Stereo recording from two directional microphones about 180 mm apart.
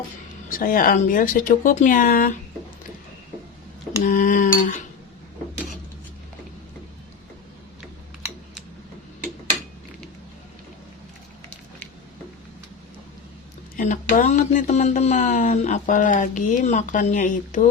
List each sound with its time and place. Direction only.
0.5 s speech: 50° left (ahead or behind)
4.0 s speech: 45° left (ahead or behind)
13.7 s speech: 45° left (ahead or behind)